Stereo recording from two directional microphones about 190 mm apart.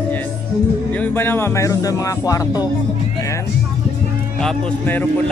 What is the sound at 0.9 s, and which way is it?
Speech, 10° left (ahead or behind).